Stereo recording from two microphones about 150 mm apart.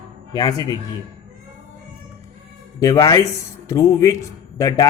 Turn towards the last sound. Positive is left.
turn(degrees=20)  # may be behind; listen again after turning